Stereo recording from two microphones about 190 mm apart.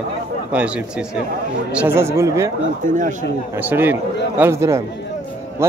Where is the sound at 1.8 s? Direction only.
10° right (ahead or behind).